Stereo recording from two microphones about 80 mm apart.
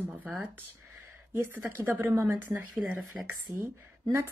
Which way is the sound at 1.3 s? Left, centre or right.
Right.